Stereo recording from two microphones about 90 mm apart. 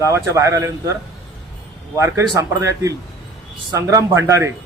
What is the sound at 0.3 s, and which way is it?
Speech, 35° right (ahead or behind).